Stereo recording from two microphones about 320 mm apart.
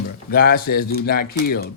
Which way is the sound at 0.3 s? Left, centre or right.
Left.